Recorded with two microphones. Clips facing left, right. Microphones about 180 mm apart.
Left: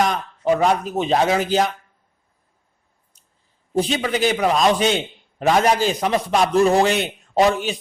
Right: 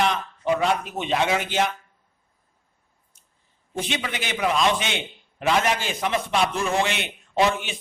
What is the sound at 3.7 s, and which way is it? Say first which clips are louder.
A man's voice: left 8 dB; 35° left (ahead or behind).